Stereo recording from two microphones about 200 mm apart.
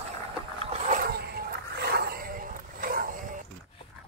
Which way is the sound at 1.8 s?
50° right (ahead or behind).